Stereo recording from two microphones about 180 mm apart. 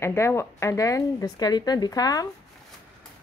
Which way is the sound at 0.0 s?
15° left (ahead or behind).